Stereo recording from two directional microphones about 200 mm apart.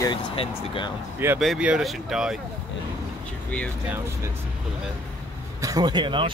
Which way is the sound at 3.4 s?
5° left (ahead or behind).